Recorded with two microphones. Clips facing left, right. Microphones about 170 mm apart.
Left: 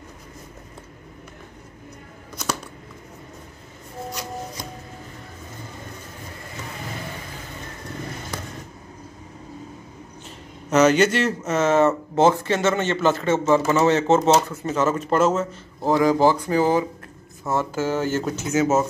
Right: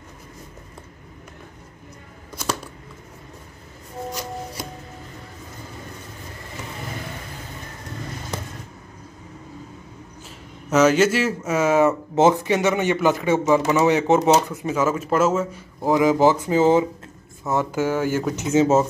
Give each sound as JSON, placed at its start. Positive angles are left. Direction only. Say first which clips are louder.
{"t": 10.7, "sound": "a man's voice", "louder": "even", "side_deg": -5}
{"t": 18.3, "sound": "speech", "louder": "right 4 dB", "side_deg": -25}